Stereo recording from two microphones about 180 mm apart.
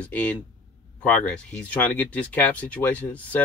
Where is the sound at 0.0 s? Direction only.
10° left (ahead or behind).